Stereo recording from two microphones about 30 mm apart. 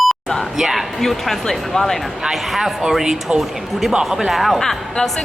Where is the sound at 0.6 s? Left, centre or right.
Centre.